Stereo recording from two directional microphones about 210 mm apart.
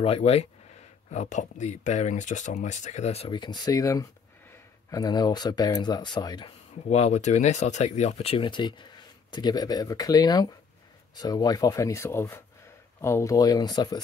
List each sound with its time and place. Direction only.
0.0 s speech: 30° left (ahead or behind)
6.9 s speech: 35° left (ahead or behind)